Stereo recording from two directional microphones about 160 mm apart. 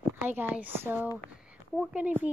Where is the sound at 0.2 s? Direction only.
10° right (ahead or behind).